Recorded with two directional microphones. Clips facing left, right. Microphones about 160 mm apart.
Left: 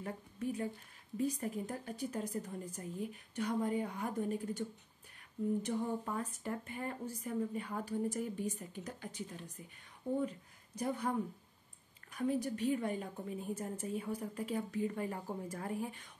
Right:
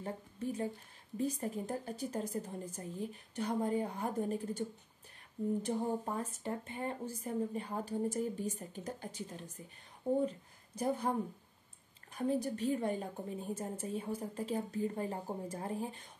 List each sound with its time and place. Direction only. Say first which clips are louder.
0.0 s a woman's voice: even; 25° right (ahead or behind)
10.8 s a woman's voice: right 2 dB; 30° right (ahead or behind)